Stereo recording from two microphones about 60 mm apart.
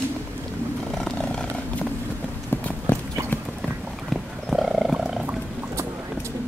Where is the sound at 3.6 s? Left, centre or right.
Centre.